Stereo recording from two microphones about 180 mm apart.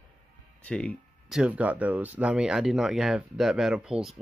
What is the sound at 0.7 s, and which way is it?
Speech, 5° left (ahead or behind).